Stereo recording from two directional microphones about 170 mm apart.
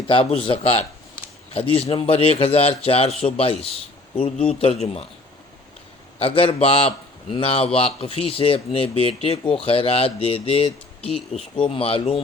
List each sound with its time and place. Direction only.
0.1 s a man's voice: 30° left (ahead or behind)
6.1 s a man's voice: 35° left (ahead or behind)